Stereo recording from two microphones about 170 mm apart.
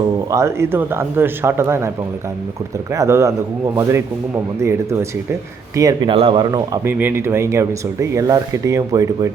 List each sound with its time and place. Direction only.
0.3 s speech: 15° right (ahead or behind)
2.9 s speech: 15° right (ahead or behind)
6.8 s speech: 15° right (ahead or behind)